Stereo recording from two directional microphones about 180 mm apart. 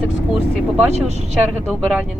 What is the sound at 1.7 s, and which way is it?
Speech, 5° right (ahead or behind).